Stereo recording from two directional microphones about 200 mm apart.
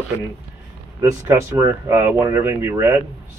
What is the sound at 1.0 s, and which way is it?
Speech, 10° right (ahead or behind).